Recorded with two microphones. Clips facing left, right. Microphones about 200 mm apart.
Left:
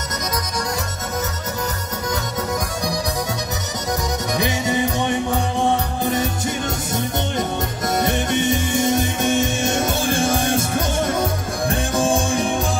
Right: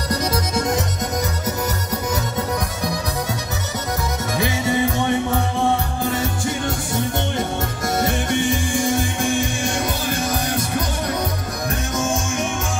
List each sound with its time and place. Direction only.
4.4 s music: 15° left (ahead or behind); by 12.5 s 35° left (ahead or behind)